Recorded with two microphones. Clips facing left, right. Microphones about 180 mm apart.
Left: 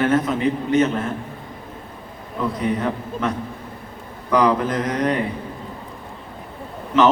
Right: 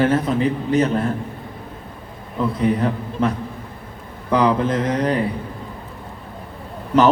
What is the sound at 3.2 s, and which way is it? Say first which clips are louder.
Speech: right 4 dB; 30° right (ahead or behind).